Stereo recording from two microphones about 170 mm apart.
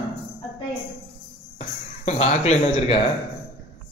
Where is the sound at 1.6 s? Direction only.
40° left (ahead or behind).